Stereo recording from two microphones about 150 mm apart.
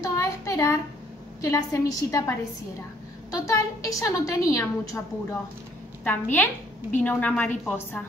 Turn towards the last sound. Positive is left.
turn(degrees=10)  # may be behind; listen again after turning